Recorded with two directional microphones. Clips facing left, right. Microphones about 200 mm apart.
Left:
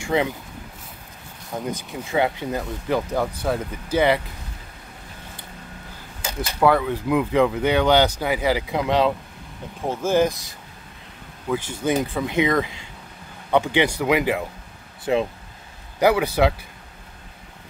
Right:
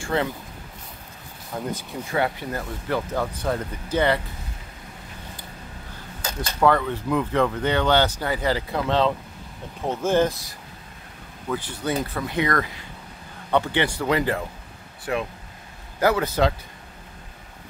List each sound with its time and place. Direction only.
0.0 s speech: 15° left (ahead or behind)
1.7 s speech: 20° left (ahead or behind)
6.2 s speech: 10° left (ahead or behind)
11.4 s speech: 10° left (ahead or behind)
15.1 s speech: 25° left (ahead or behind)
16.0 s speech: 15° left (ahead or behind)